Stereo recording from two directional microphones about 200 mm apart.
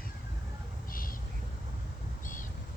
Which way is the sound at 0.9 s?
45° left (ahead or behind).